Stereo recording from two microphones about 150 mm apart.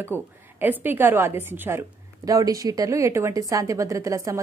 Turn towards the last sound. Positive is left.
turn(degrees=-20)  # may be behind; listen again after turning